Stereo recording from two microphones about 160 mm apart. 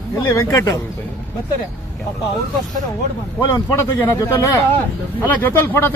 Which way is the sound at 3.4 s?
20° left (ahead or behind).